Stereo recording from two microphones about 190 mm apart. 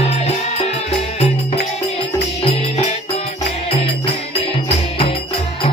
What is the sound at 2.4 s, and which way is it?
Music, 30° left (ahead or behind).